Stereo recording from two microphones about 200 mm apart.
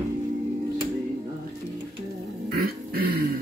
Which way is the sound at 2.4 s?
50° right (ahead or behind).